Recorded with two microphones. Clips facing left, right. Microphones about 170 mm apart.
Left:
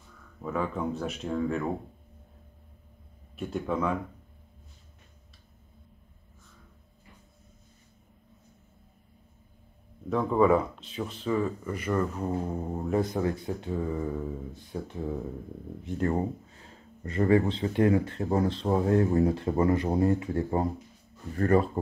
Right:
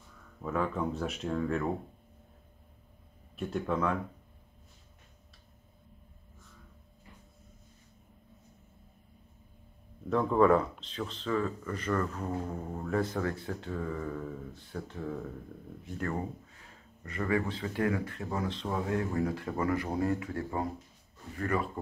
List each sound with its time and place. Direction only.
0.4 s speech: 5° left (ahead or behind)
3.3 s speech: centre (ahead or behind)
10.0 s speech: 5° left (ahead or behind); by 21.6 s 40° left (ahead or behind)